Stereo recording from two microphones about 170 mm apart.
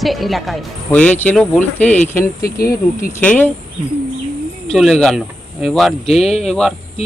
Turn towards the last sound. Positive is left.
turn(degrees=0)  # may be behind; listen again after turning